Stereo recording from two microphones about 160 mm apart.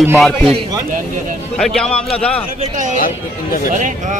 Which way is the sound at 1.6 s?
5° left (ahead or behind).